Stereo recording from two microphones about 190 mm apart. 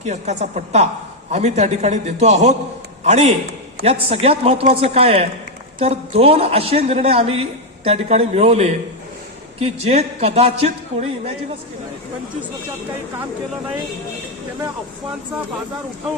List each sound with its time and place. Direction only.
0.0 s a man's voice: 35° right (ahead or behind)